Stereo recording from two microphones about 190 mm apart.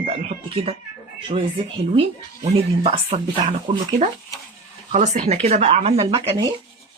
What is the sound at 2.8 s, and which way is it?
Speech, 30° right (ahead or behind).